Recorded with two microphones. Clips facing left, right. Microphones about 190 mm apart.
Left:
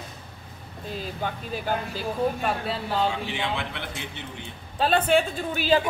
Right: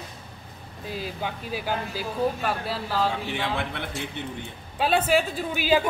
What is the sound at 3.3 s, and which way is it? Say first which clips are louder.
Speech: right 1 dB; 55° right (ahead or behind).